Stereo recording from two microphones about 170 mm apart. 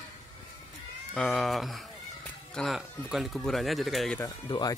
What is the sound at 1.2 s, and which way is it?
Speech, centre (ahead or behind).